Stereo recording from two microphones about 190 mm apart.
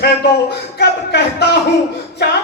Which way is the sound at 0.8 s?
60° left (ahead or behind).